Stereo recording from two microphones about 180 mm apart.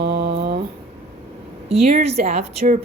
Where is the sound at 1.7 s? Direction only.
35° right (ahead or behind).